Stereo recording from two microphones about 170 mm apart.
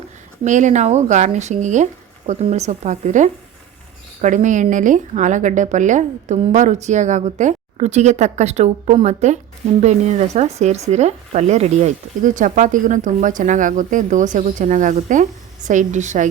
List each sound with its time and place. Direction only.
0.4 s speech: 45° right (ahead or behind)